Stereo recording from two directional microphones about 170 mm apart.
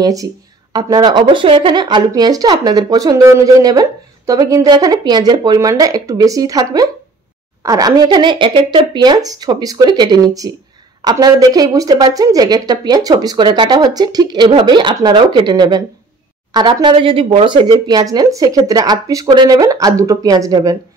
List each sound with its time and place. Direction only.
0.0 s a woman's voice: 20° right (ahead or behind)